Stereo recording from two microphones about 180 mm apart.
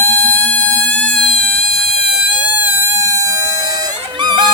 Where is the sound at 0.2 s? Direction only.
10° left (ahead or behind).